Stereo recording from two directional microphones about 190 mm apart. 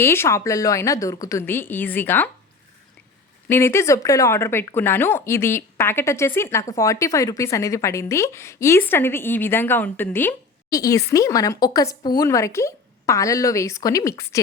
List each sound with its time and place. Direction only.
0.0 s speech: 15° left (ahead or behind)
3.5 s speech: 15° left (ahead or behind)